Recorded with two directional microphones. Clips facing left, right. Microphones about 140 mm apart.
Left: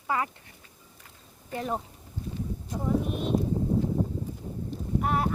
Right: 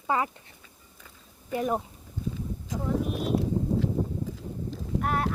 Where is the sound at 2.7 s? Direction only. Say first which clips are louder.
Right 2 dB; 90° right.